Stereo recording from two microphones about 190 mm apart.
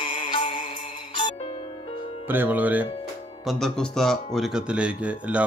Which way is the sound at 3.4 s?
5° left (ahead or behind).